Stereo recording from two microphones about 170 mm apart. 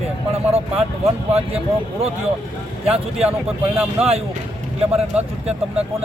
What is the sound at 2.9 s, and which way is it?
Speech, 35° right (ahead or behind).